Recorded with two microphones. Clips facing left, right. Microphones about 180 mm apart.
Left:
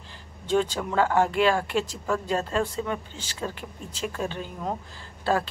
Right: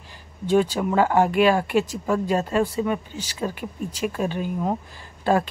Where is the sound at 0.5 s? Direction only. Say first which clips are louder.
Right 5 dB; 10° right (ahead or behind).